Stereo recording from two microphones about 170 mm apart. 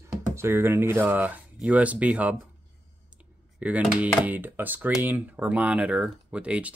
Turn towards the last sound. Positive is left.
turn(degrees=-5)  # may be behind; listen again after turning